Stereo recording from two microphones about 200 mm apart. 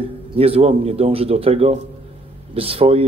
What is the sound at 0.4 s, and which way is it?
Speech, 30° right (ahead or behind).